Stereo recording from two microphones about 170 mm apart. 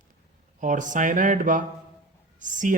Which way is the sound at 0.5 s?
50° right (ahead or behind).